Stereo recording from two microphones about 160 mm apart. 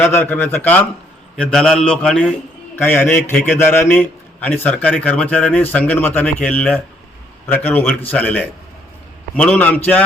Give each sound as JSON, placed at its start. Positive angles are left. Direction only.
{"t": 0.0, "sound": "a man's voice", "side_deg": 10}